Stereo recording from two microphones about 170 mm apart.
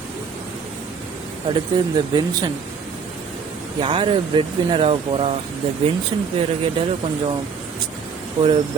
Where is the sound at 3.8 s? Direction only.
30° right (ahead or behind).